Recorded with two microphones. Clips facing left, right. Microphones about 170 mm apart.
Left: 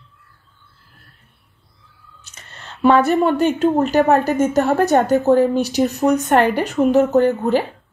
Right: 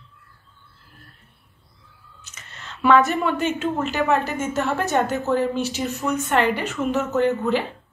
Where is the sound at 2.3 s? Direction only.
35° left (ahead or behind).